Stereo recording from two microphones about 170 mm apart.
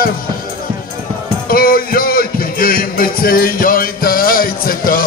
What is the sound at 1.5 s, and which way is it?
Music, 60° left (ahead or behind).